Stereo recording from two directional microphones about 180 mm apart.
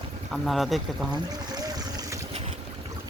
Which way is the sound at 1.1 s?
20° right (ahead or behind).